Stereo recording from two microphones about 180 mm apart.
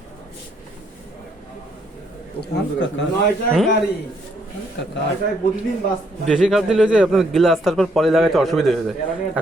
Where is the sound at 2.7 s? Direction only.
80° left.